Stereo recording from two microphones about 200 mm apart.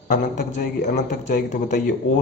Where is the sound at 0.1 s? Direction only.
40° left (ahead or behind).